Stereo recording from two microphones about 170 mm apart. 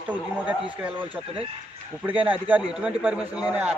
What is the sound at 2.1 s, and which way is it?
Speech, 10° right (ahead or behind).